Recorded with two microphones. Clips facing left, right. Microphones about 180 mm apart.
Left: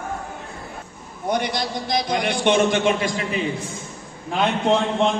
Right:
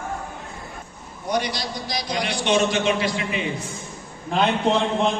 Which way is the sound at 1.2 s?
55° left (ahead or behind).